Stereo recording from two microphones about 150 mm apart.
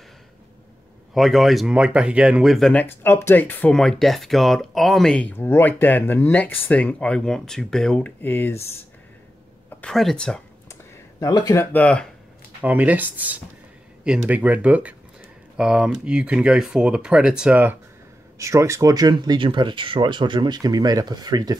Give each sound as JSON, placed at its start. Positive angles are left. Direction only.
{"t": 1.1, "sound": "speech", "side_deg": 0}
{"t": 2.8, "sound": "speech", "side_deg": 15}
{"t": 9.8, "sound": "speech", "side_deg": 5}
{"t": 10.7, "sound": "a sound", "side_deg": 25}
{"t": 11.5, "sound": "speech", "side_deg": 15}
{"t": 12.6, "sound": "speech", "side_deg": -10}